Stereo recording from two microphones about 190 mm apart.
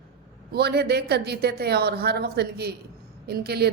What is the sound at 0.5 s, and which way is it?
A woman's voice, 60° right (ahead or behind).